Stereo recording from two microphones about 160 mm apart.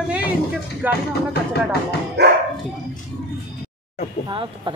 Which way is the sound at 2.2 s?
90° right.